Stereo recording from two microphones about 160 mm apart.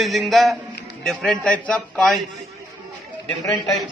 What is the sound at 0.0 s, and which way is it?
A man's voice, centre (ahead or behind).